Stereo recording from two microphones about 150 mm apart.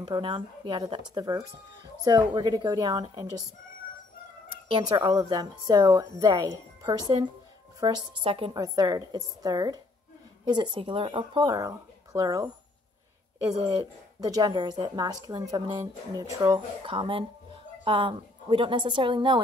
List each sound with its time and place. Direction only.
0.0 s a woman's voice: 35° right (ahead or behind)
4.6 s a woman's voice: 35° right (ahead or behind)
8.5 s a woman's voice: 25° right (ahead or behind)
13.6 s a woman's voice: 30° right (ahead or behind)
16.8 s a woman's voice: 35° right (ahead or behind)